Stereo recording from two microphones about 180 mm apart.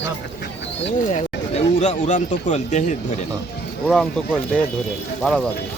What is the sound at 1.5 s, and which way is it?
Speech, 40° left (ahead or behind).